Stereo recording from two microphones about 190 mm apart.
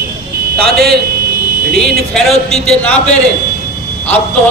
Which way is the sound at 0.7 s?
Centre (ahead or behind).